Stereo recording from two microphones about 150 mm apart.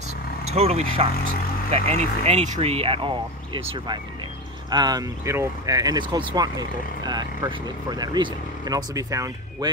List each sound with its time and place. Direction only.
0.5 s speech: 45° right (ahead or behind); by 9.7 s 20° right (ahead or behind)